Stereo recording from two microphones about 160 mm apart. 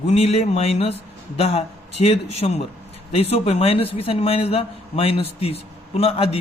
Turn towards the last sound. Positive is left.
turn(degrees=35)  # may be behind; listen again after turning